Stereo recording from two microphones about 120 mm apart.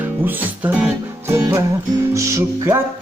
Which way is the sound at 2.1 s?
25° right (ahead or behind).